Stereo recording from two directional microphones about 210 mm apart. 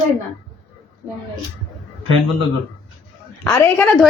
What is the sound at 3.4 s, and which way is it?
Speech, 10° left (ahead or behind).